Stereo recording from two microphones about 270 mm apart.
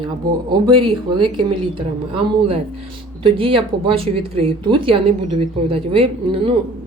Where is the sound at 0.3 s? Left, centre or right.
Centre.